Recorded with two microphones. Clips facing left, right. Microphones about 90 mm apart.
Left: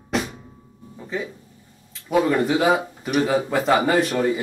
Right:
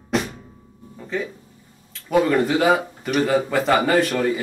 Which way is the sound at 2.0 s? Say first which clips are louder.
Right 1 dB; 5° left (ahead or behind).